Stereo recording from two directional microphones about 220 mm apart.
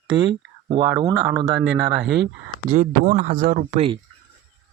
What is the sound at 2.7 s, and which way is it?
Speech, 35° right (ahead or behind).